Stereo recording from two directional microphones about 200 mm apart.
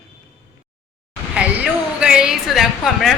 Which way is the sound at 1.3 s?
5° right (ahead or behind).